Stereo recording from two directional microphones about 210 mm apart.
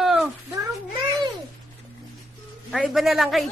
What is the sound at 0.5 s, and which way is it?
Speech, 20° right (ahead or behind).